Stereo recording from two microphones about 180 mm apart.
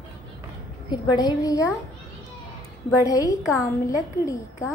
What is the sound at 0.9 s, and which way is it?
Speech, 20° left (ahead or behind).